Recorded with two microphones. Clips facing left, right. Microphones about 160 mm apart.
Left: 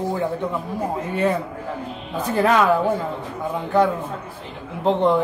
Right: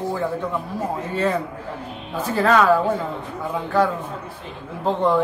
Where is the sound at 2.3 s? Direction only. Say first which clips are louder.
Right 1 dB; 20° left (ahead or behind).